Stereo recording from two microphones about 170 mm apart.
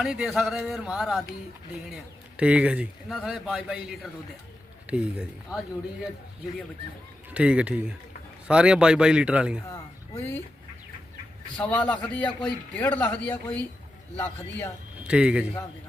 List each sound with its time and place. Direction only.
0.0 s a man's voice: centre (ahead or behind)
2.4 s a man's voice: 5° right (ahead or behind)
7.3 s a man's voice: 5° right (ahead or behind)
9.6 s a sound: 15° left (ahead or behind)
11.5 s speech: 10° left (ahead or behind)
15.0 s speech: 5° right (ahead or behind)